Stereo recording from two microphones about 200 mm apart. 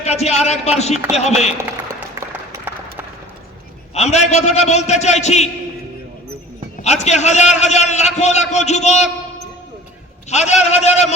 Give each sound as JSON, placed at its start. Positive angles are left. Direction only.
{"t": 0.0, "sound": "a man's voice", "side_deg": 35}
{"t": 3.9, "sound": "a man's voice", "side_deg": 35}
{"t": 6.8, "sound": "a man's voice", "side_deg": 35}
{"t": 10.2, "sound": "a man's voice", "side_deg": 35}